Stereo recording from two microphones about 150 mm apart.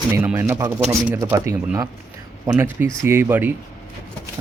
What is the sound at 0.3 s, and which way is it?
Speech, 15° right (ahead or behind).